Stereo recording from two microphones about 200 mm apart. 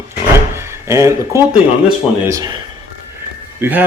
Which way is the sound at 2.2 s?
15° right (ahead or behind).